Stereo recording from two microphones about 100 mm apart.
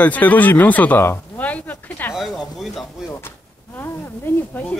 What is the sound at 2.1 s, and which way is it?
Speech, centre (ahead or behind).